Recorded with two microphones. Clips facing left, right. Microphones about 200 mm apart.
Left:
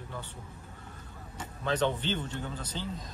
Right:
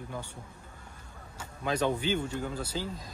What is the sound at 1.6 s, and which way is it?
Speech, 10° right (ahead or behind).